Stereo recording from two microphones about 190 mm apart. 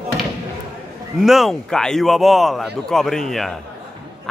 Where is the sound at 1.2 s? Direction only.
Centre (ahead or behind).